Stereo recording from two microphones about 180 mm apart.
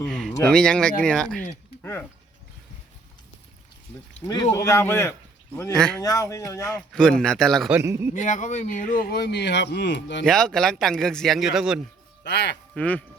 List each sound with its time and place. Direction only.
0.0 s speech: 5° left (ahead or behind)
4.5 s speech: 15° left (ahead or behind)
5.7 s speech: 5° left (ahead or behind)
6.0 s speech: 20° left (ahead or behind)
6.7 s speech: 5° left (ahead or behind)
7.8 s a man's voice: 15° right (ahead or behind)
8.1 s speech: 45° left (ahead or behind); by 10.2 s 75° left (ahead or behind)
10.2 s speech: 5° left (ahead or behind)
12.2 s speech: 70° left (ahead or behind)
12.7 s speech: 5° left (ahead or behind)